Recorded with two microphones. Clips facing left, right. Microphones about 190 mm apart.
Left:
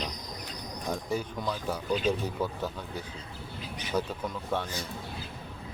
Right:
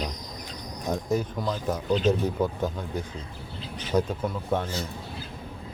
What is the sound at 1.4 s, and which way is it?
Speech, 10° right (ahead or behind).